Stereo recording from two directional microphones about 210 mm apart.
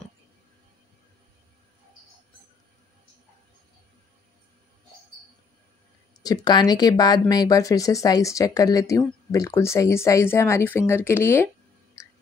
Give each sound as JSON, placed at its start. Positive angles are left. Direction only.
{"t": 6.2, "sound": "speech", "side_deg": 20}